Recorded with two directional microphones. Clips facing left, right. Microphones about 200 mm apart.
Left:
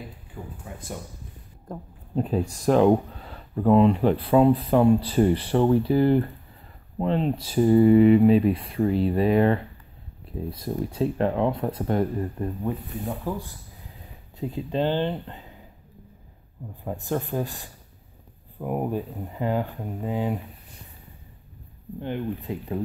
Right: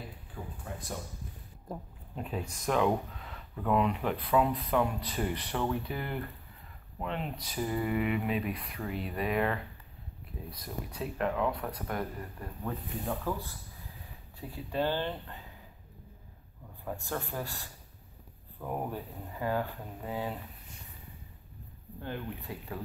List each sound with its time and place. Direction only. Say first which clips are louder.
0.3 s speech: left 2 dB; centre (ahead or behind)
2.1 s speech: left 12 dB; 35° left (ahead or behind)
16.8 s speech: left 8 dB; 20° left (ahead or behind)
22.5 s speech: left 10 dB; 20° left (ahead or behind)